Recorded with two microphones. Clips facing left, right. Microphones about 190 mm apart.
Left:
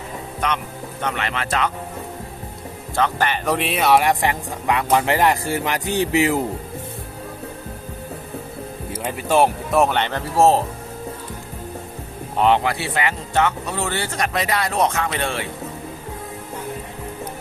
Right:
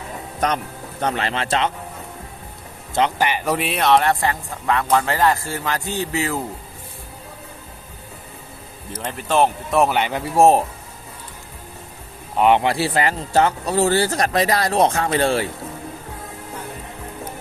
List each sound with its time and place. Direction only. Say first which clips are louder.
0.3 s speech: right 3 dB; 40° right (ahead or behind)
2.9 s speech: right 1 dB; 15° right (ahead or behind)
3.4 s speech: left 2 dB; centre (ahead or behind); by 6.4 s 15° left (ahead or behind)
8.9 s speech: left 2 dB; 10° left (ahead or behind)
9.8 s speech: right 1 dB; 10° right (ahead or behind)
12.4 s speech: right 1 dB; 15° right (ahead or behind)
12.6 s speech: right 3 dB; 35° right (ahead or behind)